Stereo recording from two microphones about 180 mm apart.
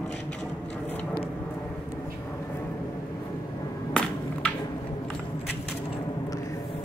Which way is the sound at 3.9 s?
5° left (ahead or behind).